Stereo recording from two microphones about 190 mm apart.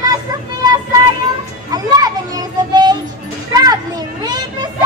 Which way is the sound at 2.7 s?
25° right (ahead or behind).